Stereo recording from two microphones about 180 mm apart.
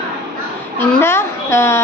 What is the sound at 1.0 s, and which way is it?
Speech, 15° left (ahead or behind).